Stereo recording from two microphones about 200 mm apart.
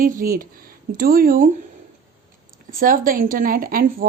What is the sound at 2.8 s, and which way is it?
A woman's voice, 45° right (ahead or behind).